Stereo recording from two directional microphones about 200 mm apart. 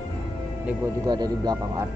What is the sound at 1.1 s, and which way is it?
Speech, 20° right (ahead or behind).